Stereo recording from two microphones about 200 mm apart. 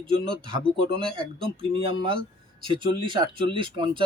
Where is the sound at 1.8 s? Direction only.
25° right (ahead or behind).